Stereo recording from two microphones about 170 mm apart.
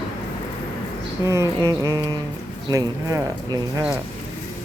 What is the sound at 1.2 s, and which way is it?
Speech, 15° right (ahead or behind).